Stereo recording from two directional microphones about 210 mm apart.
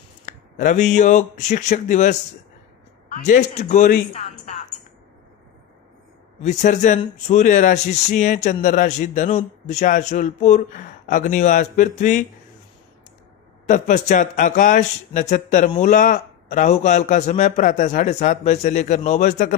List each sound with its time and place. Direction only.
0.2 s speech: 35° left (ahead or behind)
6.4 s speech: 35° left (ahead or behind)
13.7 s speech: 35° left (ahead or behind)